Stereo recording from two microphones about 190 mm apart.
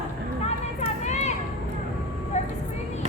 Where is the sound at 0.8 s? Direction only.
35° left (ahead or behind).